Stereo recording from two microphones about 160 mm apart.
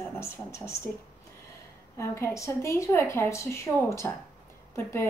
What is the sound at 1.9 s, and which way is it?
A woman's voice, 15° left (ahead or behind).